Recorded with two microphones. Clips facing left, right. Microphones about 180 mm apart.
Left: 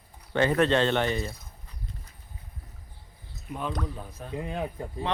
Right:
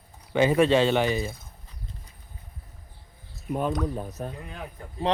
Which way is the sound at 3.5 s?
45° right (ahead or behind).